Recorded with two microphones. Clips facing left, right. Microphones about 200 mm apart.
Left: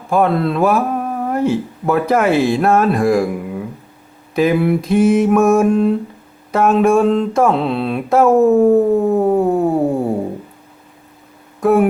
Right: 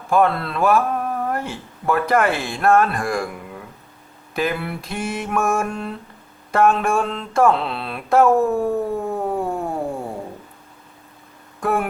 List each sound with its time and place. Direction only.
0.1 s mantra: centre (ahead or behind)
0.9 s speech: 5° left (ahead or behind)
4.4 s mantra: centre (ahead or behind)
8.4 s music: 20° left (ahead or behind)
11.6 s a sound: centre (ahead or behind)